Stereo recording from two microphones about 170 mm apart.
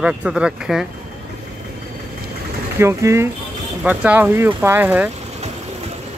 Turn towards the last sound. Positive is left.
turn(degrees=-10)  # may be behind; listen again after turning